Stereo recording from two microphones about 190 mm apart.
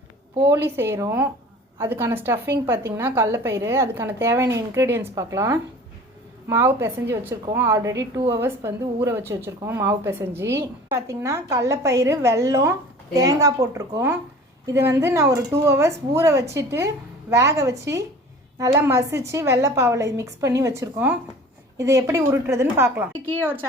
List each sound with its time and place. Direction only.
0.4 s speech: 15° right (ahead or behind)